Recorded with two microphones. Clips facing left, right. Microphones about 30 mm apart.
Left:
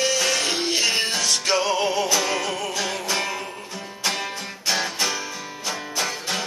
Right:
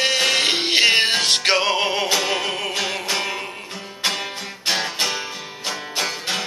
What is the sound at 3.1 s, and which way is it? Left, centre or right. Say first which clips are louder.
Music: even; right.